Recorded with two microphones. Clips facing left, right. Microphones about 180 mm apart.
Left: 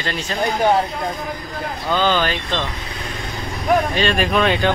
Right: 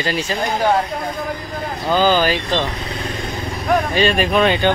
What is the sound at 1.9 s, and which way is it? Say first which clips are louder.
Speech: right 3 dB; 5° right (ahead or behind).